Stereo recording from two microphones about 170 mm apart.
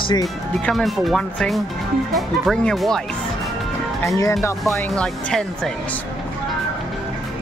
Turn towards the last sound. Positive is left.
turn(degrees=5)  # may be behind; listen again after turning